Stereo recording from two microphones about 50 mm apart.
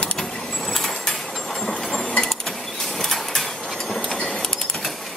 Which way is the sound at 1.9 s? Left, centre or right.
Centre.